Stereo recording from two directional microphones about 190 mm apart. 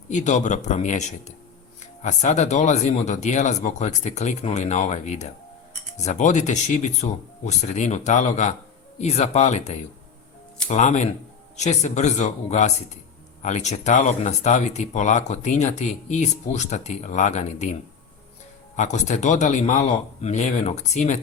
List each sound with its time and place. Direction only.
0.1 s speech: 40° left (ahead or behind)
18.8 s speech: 40° left (ahead or behind)